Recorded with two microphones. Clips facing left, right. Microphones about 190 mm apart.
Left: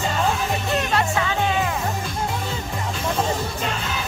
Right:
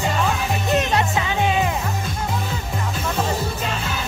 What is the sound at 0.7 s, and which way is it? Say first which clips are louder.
Music: right 1 dB; 20° right (ahead or behind).